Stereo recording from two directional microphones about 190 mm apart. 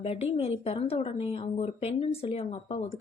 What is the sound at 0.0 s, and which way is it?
Speech, 30° left (ahead or behind).